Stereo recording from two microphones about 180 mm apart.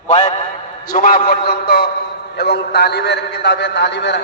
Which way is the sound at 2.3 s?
65° left (ahead or behind).